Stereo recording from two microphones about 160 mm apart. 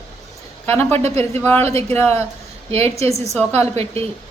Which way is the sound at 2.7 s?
40° right (ahead or behind).